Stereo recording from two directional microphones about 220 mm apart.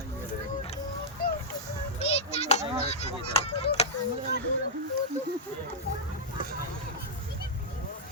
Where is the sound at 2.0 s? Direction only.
30° left (ahead or behind).